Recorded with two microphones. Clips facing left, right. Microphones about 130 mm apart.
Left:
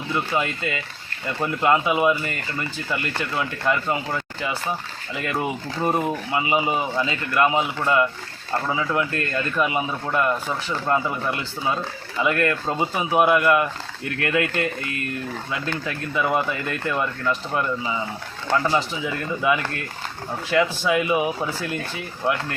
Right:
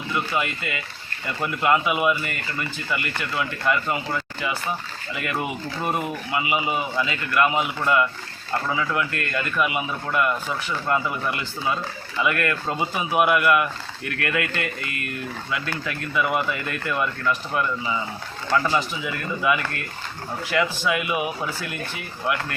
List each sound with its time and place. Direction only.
0.1 s speech: 30° left (ahead or behind)
15.9 s speech: 25° left (ahead or behind)
19.4 s speech: 25° left (ahead or behind)